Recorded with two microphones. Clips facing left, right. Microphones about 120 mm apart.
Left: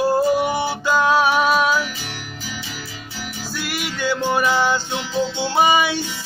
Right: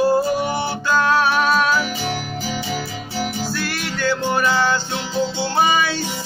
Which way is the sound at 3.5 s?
10° left (ahead or behind).